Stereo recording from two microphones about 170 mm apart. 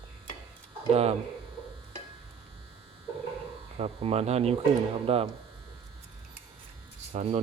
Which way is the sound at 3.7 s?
35° right (ahead or behind).